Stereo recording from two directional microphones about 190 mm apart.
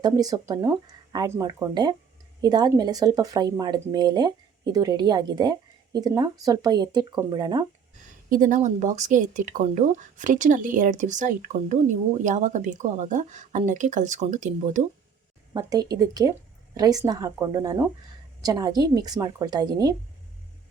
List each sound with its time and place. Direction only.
0.0 s speech: 20° right (ahead or behind)
8.3 s speech: 45° right (ahead or behind)
15.5 s speech: 20° right (ahead or behind)